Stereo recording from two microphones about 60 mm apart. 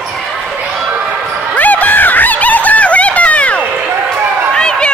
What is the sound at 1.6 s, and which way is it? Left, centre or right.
Snicker, left.